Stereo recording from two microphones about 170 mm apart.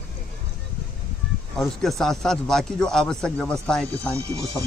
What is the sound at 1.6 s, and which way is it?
Speech, centre (ahead or behind).